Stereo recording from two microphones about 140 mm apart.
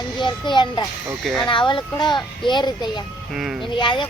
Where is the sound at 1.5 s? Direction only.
35° left (ahead or behind).